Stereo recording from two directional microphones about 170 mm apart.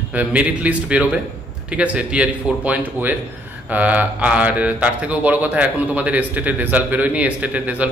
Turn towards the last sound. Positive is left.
turn(degrees=-10)  # may be behind; listen again after turning